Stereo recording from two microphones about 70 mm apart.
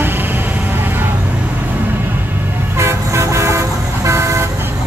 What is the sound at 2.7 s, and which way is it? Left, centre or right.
Vehicle, right.